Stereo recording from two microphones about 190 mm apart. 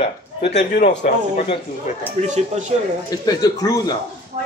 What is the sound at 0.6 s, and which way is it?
Speech, 45° left (ahead or behind).